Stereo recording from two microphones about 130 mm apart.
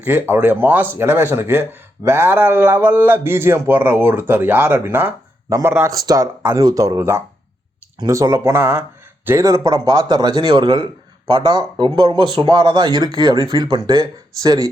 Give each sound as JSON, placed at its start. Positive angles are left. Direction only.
{"t": 0.0, "sound": "a man's voice", "side_deg": -15}